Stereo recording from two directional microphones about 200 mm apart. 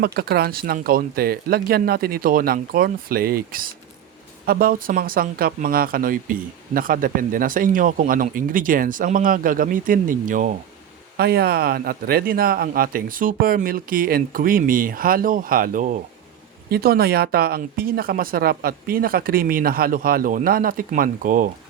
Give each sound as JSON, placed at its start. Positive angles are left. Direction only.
{"t": 0.0, "sound": "speech", "side_deg": -50}